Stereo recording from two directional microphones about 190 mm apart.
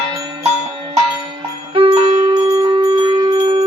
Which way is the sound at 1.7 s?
30° right (ahead or behind).